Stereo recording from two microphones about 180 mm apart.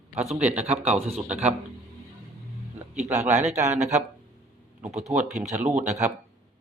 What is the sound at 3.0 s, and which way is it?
Speech, 40° right (ahead or behind).